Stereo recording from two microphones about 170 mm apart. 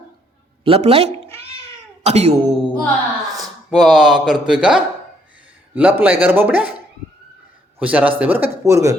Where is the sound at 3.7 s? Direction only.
Centre (ahead or behind).